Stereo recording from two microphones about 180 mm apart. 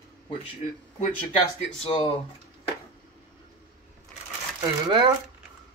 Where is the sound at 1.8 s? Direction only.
30° left (ahead or behind).